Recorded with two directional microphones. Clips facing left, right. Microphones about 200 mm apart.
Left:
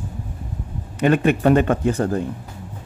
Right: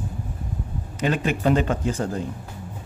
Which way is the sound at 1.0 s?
60° left (ahead or behind).